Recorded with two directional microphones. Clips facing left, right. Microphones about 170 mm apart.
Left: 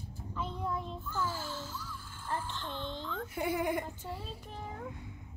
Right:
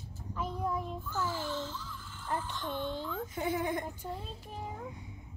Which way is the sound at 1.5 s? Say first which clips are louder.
Right 4 dB; 10° left (ahead or behind).